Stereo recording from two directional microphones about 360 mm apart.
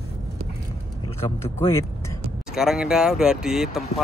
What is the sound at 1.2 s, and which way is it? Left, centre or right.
Speech, centre.